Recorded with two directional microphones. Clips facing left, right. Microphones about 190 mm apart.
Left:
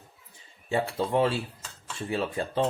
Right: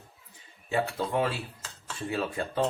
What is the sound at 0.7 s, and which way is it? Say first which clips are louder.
Speech: left 2 dB; 30° left (ahead or behind).